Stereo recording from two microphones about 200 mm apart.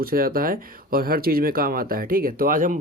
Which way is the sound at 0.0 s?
45° right (ahead or behind).